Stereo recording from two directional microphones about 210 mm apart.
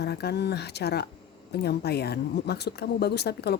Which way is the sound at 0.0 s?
50° left (ahead or behind).